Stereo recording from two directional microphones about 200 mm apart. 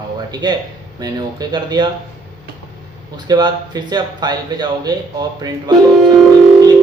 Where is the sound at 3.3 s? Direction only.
20° right (ahead or behind).